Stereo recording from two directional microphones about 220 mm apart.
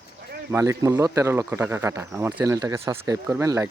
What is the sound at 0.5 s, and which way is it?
Speech, 15° right (ahead or behind).